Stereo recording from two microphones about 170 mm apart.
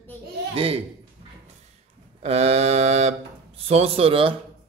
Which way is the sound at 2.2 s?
40° right (ahead or behind).